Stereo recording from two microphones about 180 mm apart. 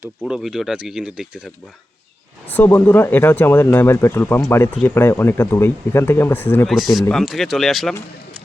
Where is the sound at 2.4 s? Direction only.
10° left (ahead or behind).